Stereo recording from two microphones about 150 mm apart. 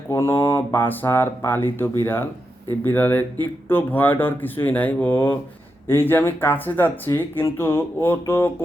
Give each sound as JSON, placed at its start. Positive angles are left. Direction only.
{"t": 0.1, "sound": "speech", "side_deg": 20}